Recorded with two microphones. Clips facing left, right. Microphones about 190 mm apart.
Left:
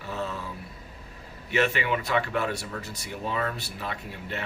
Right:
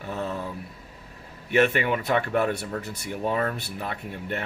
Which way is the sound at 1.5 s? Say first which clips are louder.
Right 4 dB; 55° right (ahead or behind).